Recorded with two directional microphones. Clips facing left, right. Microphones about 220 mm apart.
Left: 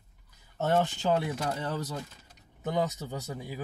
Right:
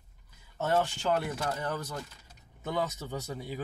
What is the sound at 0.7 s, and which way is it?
Speech, 15° left (ahead or behind).